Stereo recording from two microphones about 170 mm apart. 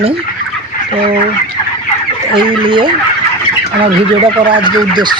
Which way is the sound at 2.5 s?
30° right (ahead or behind).